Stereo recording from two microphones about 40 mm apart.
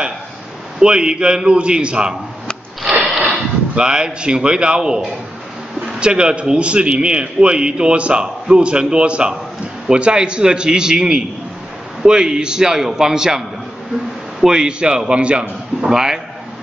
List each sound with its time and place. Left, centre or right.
0.7 s a man's voice: right
2.9 s sniff: centre
3.7 s a man's voice: right
14.4 s a man's voice: centre
15.8 s a man's voice: centre